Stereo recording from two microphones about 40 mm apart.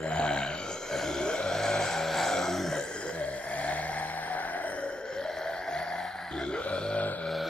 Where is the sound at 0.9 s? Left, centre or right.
Centre.